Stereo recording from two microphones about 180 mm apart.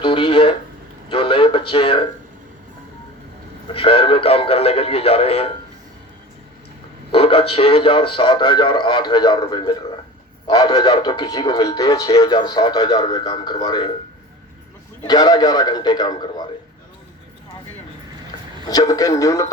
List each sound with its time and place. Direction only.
0.0 s speech: 30° left (ahead or behind)
3.7 s speech: 30° left (ahead or behind)
7.1 s speech: 30° left (ahead or behind)
15.0 s speech: 20° left (ahead or behind)
18.6 s speech: 20° left (ahead or behind)